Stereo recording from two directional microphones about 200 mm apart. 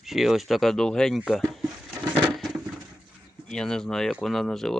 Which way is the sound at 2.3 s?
Centre (ahead or behind).